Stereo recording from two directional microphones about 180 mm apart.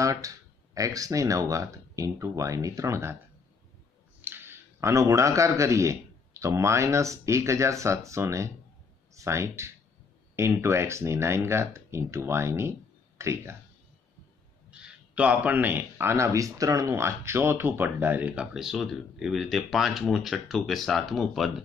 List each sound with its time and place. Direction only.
0.0 s a man's voice: 20° right (ahead or behind)
4.2 s a man's voice: 10° right (ahead or behind)
14.7 s a man's voice: 5° right (ahead or behind)